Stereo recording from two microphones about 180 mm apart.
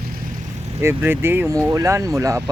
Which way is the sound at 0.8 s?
10° right (ahead or behind).